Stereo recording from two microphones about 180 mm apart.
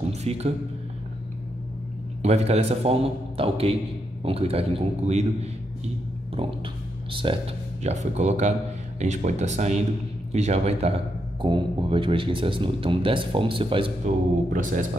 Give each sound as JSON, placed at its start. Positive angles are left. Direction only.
{"t": 0.1, "sound": "music", "side_deg": -35}
{"t": 2.2, "sound": "a man's voice", "side_deg": -35}
{"t": 6.3, "sound": "a sound", "side_deg": -30}
{"t": 7.8, "sound": "a man's voice", "side_deg": -40}
{"t": 14.0, "sound": "speech", "side_deg": -45}